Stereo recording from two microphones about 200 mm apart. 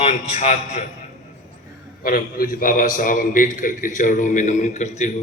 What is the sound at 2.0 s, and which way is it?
A man's voice, 45° left (ahead or behind).